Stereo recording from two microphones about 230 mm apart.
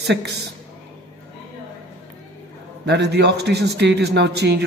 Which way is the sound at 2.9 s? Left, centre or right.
Right.